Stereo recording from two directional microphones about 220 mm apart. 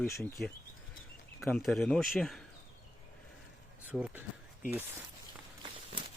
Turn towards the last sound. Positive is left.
turn(degrees=-25)  # may be behind; listen again after turning